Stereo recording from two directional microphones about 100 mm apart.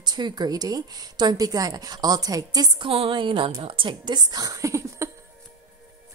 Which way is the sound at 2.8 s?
60° right (ahead or behind).